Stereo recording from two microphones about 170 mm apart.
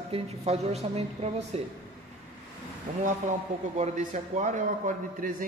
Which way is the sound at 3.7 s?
45° right (ahead or behind).